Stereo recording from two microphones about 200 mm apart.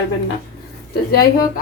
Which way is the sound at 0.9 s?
50° left (ahead or behind).